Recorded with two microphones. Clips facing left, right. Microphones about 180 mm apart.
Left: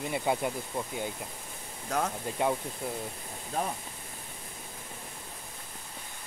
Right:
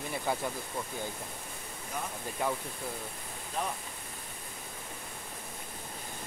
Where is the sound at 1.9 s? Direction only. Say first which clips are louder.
Left 8 dB; 80° left.